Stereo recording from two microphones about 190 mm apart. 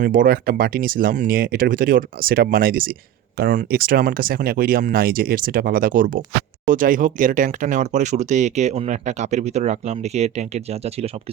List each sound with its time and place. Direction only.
0.0 s speech: 45° right (ahead or behind)